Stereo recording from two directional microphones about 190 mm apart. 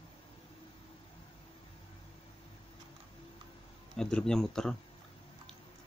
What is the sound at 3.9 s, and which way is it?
Speech, 5° left (ahead or behind).